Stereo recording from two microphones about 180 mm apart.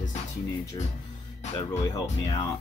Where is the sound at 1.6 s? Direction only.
20° left (ahead or behind).